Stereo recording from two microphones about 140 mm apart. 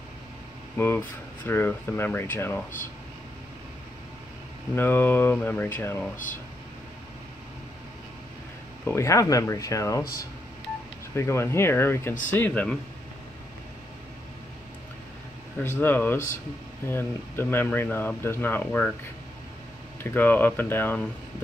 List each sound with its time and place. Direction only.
0.7 s speech: 15° left (ahead or behind)
4.7 s speech: 15° left (ahead or behind)
8.8 s speech: 20° left (ahead or behind)
11.1 s speech: 20° left (ahead or behind)
15.6 s speech: 15° left (ahead or behind)
20.0 s speech: 15° left (ahead or behind)